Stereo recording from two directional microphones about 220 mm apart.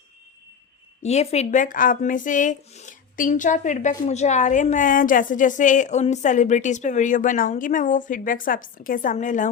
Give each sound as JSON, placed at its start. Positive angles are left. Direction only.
{"t": 1.0, "sound": "speech", "side_deg": 30}